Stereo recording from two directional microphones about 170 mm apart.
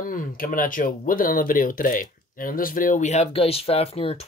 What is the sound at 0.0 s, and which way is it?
Speech, 55° left (ahead or behind).